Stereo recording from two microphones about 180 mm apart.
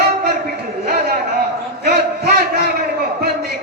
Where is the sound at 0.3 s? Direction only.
60° right (ahead or behind).